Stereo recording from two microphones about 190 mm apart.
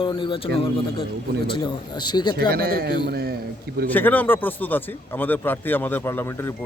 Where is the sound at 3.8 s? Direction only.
10° left (ahead or behind).